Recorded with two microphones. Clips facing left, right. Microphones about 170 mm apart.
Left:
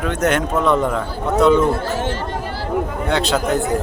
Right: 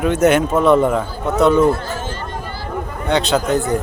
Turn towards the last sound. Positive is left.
turn(degrees=0)  # may be behind; listen again after turning